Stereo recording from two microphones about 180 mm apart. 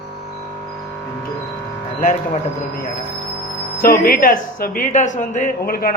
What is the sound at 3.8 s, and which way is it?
A man's voice, 55° left (ahead or behind).